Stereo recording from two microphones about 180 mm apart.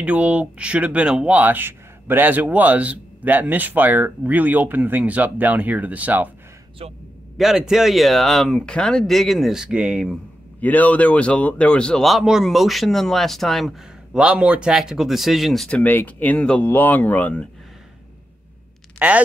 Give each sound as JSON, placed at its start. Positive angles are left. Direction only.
{"t": 0.0, "sound": "speech", "side_deg": -5}
{"t": 6.8, "sound": "a man's voice", "side_deg": -35}
{"t": 7.3, "sound": "speech", "side_deg": 0}
{"t": 10.6, "sound": "speech", "side_deg": 10}
{"t": 18.9, "sound": "speech", "side_deg": -10}